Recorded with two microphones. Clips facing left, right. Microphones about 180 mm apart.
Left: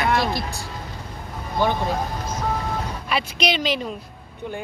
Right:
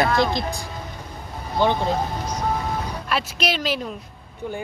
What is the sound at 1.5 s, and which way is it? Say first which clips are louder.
Speech: right 2 dB; 20° right (ahead or behind).